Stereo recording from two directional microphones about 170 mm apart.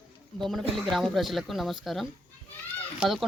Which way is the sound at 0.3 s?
Centre (ahead or behind).